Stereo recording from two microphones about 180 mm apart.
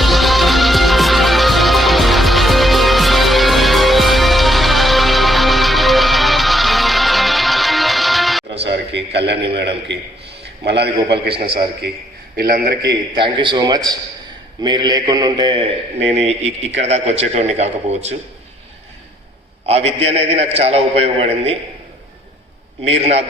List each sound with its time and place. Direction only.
0.0 s music: centre (ahead or behind)
8.6 s a sound: 75° right (ahead or behind)
10.7 s a man's voice: 65° right (ahead or behind)
12.4 s a man's voice: 55° right (ahead or behind)
12.9 s a man's voice: 25° right (ahead or behind)
19.6 s a man's voice: 35° right (ahead or behind)
22.9 s a man's voice: 35° right (ahead or behind)